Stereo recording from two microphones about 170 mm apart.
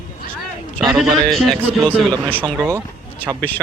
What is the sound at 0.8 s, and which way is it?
Speech, 5° right (ahead or behind).